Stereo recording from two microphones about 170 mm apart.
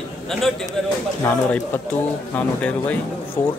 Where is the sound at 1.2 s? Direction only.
10° left (ahead or behind).